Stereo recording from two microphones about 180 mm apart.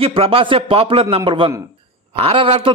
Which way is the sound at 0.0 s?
30° right (ahead or behind).